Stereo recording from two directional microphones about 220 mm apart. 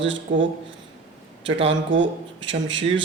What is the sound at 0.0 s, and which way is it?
Speech, 60° right (ahead or behind).